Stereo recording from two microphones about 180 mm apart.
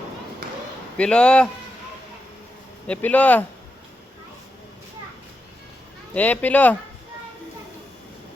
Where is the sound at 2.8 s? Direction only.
10° left (ahead or behind).